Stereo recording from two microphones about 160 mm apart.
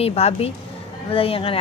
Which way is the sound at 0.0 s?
40° left (ahead or behind).